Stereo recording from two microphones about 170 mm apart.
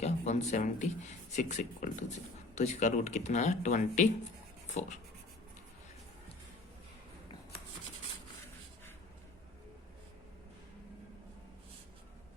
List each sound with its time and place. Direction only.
0.0 s speech: 45° left (ahead or behind)